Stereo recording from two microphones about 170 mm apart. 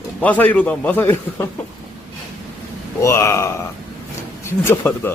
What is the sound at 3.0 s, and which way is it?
A man's voice, 15° left (ahead or behind).